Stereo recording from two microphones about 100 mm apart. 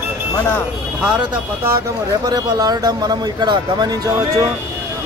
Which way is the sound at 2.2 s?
40° right (ahead or behind).